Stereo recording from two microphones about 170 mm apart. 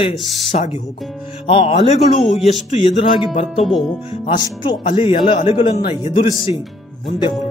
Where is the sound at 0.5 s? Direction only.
40° left (ahead or behind).